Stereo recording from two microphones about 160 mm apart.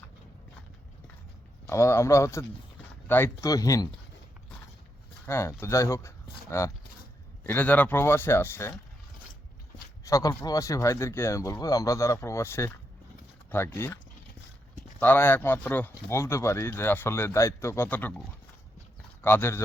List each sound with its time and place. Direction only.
1.6 s speech: 15° left (ahead or behind)
5.2 s speech: 15° left (ahead or behind)
10.0 s speech: 20° left (ahead or behind)
19.2 s speech: 15° left (ahead or behind)